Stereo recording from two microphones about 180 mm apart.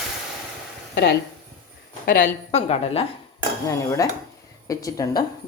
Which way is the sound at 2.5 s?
35° left (ahead or behind).